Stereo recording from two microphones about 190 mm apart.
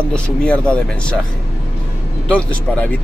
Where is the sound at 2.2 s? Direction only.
5° left (ahead or behind).